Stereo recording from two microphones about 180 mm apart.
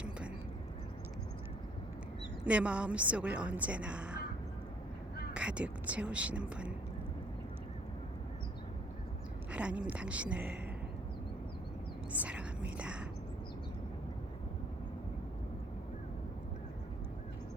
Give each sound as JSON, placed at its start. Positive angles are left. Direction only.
{"t": 2.5, "sound": "a woman's voice", "side_deg": -5}
{"t": 5.3, "sound": "speech", "side_deg": -5}
{"t": 9.5, "sound": "a woman's voice", "side_deg": -5}
{"t": 12.1, "sound": "whispering", "side_deg": -5}